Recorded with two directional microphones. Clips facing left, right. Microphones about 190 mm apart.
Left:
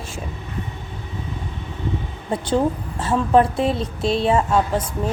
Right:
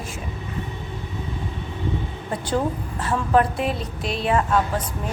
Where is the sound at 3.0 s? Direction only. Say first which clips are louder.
Left 4 dB; 25° left (ahead or behind).